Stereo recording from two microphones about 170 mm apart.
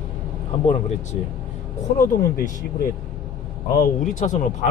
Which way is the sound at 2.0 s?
50° left (ahead or behind).